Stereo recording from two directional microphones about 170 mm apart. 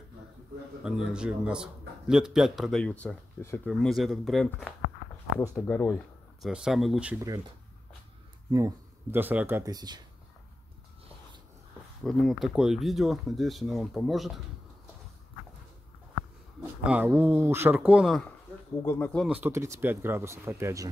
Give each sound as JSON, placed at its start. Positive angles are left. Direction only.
{"t": 0.8, "sound": "speech", "side_deg": -5}
{"t": 5.7, "sound": "speech", "side_deg": 15}
{"t": 6.4, "sound": "speech", "side_deg": -5}
{"t": 8.5, "sound": "speech", "side_deg": -20}
{"t": 12.0, "sound": "speech", "side_deg": 0}
{"t": 16.8, "sound": "speech", "side_deg": -10}
{"t": 18.8, "sound": "speech", "side_deg": 15}
{"t": 19.2, "sound": "speech", "side_deg": -10}